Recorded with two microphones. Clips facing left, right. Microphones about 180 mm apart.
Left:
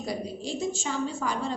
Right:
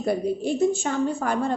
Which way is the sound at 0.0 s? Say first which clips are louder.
Right 9 dB; 55° right (ahead or behind).